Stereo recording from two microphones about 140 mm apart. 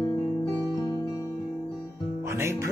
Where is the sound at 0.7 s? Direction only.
30° left (ahead or behind).